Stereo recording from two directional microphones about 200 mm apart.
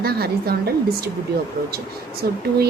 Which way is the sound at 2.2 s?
50° right (ahead or behind).